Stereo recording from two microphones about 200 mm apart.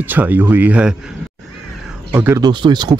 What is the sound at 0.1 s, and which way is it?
Speech, 10° right (ahead or behind).